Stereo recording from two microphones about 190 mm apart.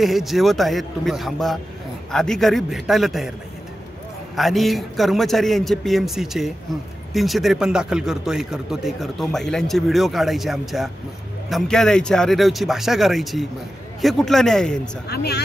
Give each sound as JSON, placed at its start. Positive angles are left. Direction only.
{"t": 0.0, "sound": "a man's voice", "side_deg": 0}
{"t": 4.4, "sound": "a man's voice", "side_deg": 0}
{"t": 15.0, "sound": "speech", "side_deg": 60}